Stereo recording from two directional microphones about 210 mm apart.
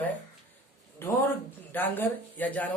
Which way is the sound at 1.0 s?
10° left (ahead or behind).